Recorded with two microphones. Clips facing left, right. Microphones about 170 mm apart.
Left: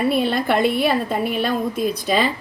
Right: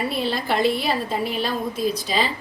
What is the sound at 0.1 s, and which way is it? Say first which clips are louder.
A woman's voice: left 5 dB; 55° left (ahead or behind).